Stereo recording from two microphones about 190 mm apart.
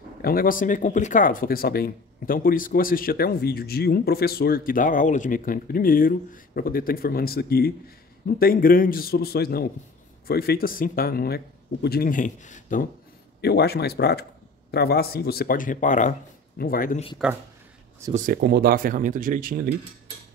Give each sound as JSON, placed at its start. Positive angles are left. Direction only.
{"t": 0.2, "sound": "speech", "side_deg": 50}
{"t": 13.4, "sound": "speech", "side_deg": 60}
{"t": 17.2, "sound": "speech", "side_deg": -5}
{"t": 18.1, "sound": "speech", "side_deg": -50}